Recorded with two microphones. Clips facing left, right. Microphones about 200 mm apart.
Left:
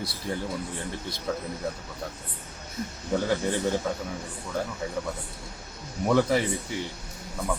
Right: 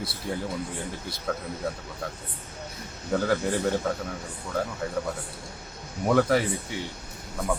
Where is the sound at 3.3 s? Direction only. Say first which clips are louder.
Right 2 dB; centre (ahead or behind).